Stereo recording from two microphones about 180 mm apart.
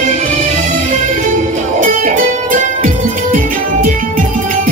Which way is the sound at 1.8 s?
45° right (ahead or behind).